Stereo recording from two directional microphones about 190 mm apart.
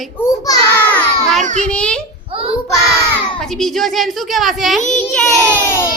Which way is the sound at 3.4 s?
Centre (ahead or behind).